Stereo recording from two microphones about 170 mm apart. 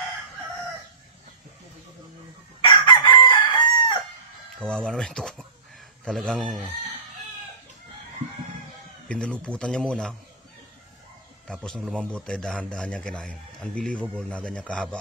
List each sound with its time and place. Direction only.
2.6 s chicken: 30° left (ahead or behind)
4.0 s chicken: centre (ahead or behind)
6.0 s a man's voice: 5° left (ahead or behind)
9.1 s a man's voice: 5° left (ahead or behind)
11.6 s a man's voice: 5° left (ahead or behind)